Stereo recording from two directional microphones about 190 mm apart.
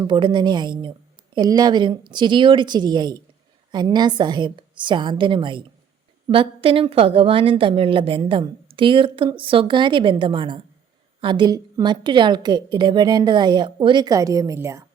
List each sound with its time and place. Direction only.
0.0 s a woman's voice: 25° right (ahead or behind)